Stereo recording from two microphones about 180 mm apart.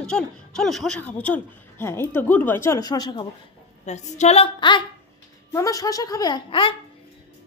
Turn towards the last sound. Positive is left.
turn(degrees=30)  # may be behind; listen again after turning